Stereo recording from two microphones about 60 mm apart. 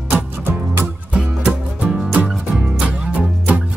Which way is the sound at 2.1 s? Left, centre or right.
Centre.